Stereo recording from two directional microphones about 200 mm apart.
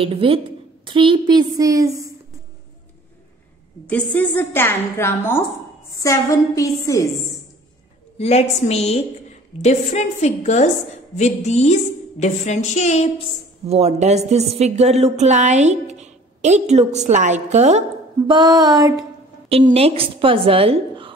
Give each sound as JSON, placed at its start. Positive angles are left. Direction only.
{"t": 0.0, "sound": "a woman's voice", "side_deg": -25}
{"t": 3.8, "sound": "a woman's voice", "side_deg": 5}
{"t": 8.2, "sound": "music", "side_deg": 35}
{"t": 13.7, "sound": "a woman's voice", "side_deg": -35}
{"t": 18.2, "sound": "a woman's voice", "side_deg": -20}
{"t": 19.5, "sound": "a woman's voice", "side_deg": -30}